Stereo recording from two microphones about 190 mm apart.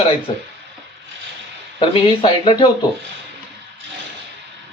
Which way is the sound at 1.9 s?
25° left (ahead or behind).